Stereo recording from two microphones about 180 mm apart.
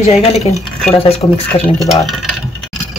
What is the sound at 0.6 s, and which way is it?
Speech, 5° left (ahead or behind).